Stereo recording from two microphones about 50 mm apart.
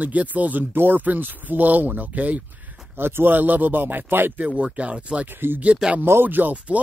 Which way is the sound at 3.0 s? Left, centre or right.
Right.